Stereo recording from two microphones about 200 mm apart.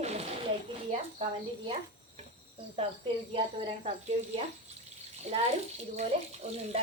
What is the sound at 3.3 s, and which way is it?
A woman's voice, 30° right (ahead or behind).